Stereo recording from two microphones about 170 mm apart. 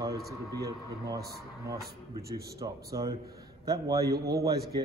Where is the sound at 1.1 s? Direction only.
65° right (ahead or behind).